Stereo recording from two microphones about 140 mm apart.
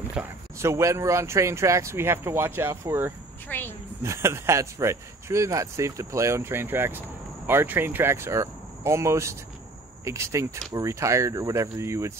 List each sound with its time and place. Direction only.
0.1 s speech: 15° right (ahead or behind)
3.4 s a woman's voice: 15° left (ahead or behind)
4.0 s speech: 20° right (ahead or behind)